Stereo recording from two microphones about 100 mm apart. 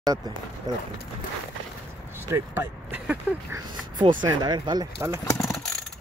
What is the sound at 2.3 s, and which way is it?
Speech, 25° right (ahead or behind).